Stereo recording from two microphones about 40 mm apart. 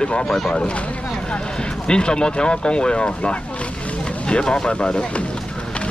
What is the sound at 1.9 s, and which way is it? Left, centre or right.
Speech, left.